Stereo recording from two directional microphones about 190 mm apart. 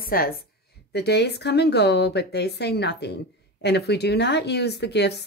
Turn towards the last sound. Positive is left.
turn(degrees=60)  # may be behind; listen again after turning